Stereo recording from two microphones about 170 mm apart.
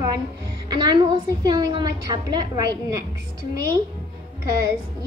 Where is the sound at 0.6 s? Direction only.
25° right (ahead or behind).